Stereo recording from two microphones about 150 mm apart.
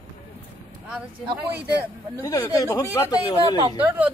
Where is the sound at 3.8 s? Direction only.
10° right (ahead or behind).